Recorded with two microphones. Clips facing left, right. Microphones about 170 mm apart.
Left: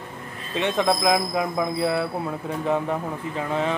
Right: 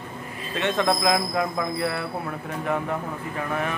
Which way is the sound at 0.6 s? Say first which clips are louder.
Left 1 dB; 15° left (ahead or behind).